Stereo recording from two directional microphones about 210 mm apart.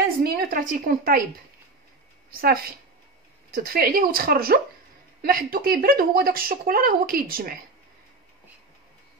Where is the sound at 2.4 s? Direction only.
45° right (ahead or behind).